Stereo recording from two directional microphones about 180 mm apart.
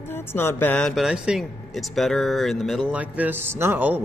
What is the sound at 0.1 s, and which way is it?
Speech, 10° left (ahead or behind).